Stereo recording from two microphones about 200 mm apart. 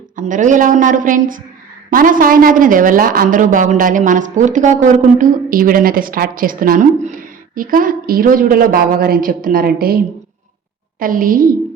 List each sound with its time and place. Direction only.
0.2 s a woman's voice: 40° right (ahead or behind)
11.0 s a woman's voice: 45° right (ahead or behind)